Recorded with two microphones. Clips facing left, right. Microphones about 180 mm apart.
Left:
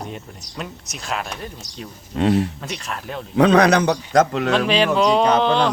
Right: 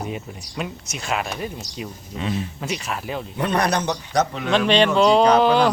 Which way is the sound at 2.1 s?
65° left (ahead or behind).